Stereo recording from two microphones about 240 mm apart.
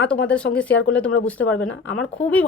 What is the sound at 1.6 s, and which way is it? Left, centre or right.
Speech, left.